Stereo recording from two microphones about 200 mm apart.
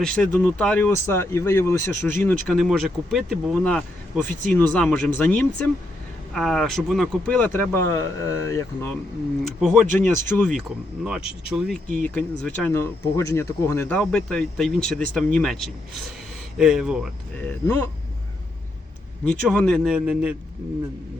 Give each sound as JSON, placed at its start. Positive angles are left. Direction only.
{"t": 0.0, "sound": "speech", "side_deg": 5}
{"t": 2.5, "sound": "speech", "side_deg": 0}
{"t": 9.4, "sound": "speech", "side_deg": 0}
{"t": 17.4, "sound": "speech", "side_deg": 10}
{"t": 19.2, "sound": "speech", "side_deg": 5}